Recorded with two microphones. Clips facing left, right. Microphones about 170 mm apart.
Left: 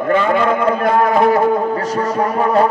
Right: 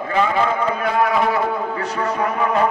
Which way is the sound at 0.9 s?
45° left (ahead or behind).